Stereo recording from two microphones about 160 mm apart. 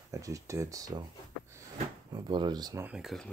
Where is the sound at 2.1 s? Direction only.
30° right (ahead or behind).